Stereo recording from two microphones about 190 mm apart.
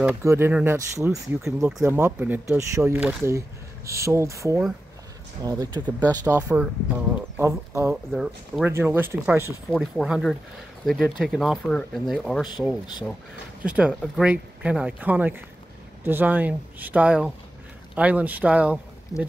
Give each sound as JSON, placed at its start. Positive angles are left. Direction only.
{"t": 0.0, "sound": "speech", "side_deg": -15}
{"t": 6.2, "sound": "speech", "side_deg": -10}
{"t": 7.9, "sound": "speech", "side_deg": 0}
{"t": 9.7, "sound": "speech", "side_deg": 0}
{"t": 13.7, "sound": "speech", "side_deg": -5}